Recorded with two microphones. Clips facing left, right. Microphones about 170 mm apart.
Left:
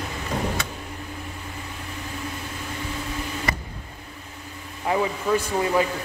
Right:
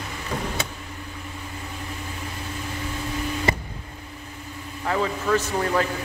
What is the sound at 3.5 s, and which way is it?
Vehicle, 30° right (ahead or behind).